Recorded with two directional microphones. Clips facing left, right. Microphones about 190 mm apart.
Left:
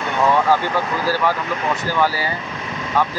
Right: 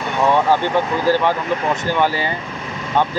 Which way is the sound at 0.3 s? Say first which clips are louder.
Right 2 dB; 20° right (ahead or behind).